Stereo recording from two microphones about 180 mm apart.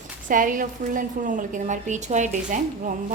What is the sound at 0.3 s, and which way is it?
A woman's voice, 50° right (ahead or behind).